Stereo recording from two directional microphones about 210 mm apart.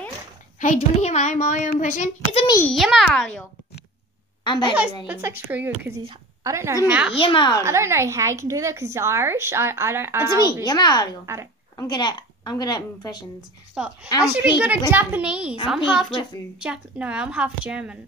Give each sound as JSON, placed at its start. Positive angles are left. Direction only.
{"t": 0.6, "sound": "a child's voice", "side_deg": 35}
{"t": 2.6, "sound": "a woman's voice", "side_deg": 0}
{"t": 4.5, "sound": "a woman's voice", "side_deg": 20}
{"t": 5.0, "sound": "a woman's voice", "side_deg": -10}
{"t": 7.2, "sound": "a woman's voice", "side_deg": 25}
{"t": 7.5, "sound": "a woman's voice", "side_deg": -15}
{"t": 10.4, "sound": "a woman's voice", "side_deg": 20}
{"t": 11.3, "sound": "a woman's voice", "side_deg": -10}
{"t": 11.7, "sound": "a woman's voice", "side_deg": 20}
{"t": 13.8, "sound": "a woman's voice", "side_deg": -5}